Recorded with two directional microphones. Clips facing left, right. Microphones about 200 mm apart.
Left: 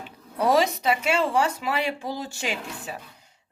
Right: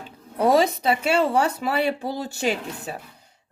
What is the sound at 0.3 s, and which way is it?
Speech, 30° right (ahead or behind).